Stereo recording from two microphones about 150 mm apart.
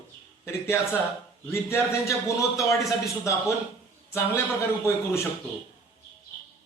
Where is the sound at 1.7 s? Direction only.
15° left (ahead or behind).